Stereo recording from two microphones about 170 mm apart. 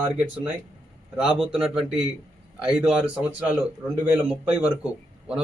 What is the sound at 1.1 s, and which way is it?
Speech, 5° right (ahead or behind).